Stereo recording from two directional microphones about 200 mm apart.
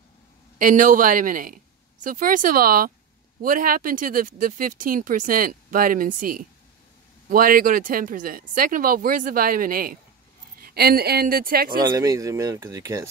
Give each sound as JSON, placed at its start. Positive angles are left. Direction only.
{"t": 0.6, "sound": "a woman's voice", "side_deg": -40}
{"t": 11.8, "sound": "speech", "side_deg": -15}